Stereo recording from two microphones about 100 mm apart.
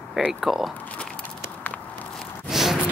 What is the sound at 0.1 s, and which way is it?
Speech, 5° right (ahead or behind).